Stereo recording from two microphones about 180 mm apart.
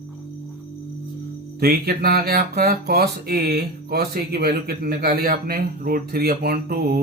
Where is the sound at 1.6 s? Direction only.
60° right (ahead or behind).